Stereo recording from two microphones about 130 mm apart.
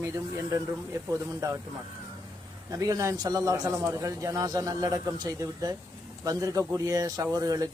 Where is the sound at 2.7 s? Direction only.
25° right (ahead or behind).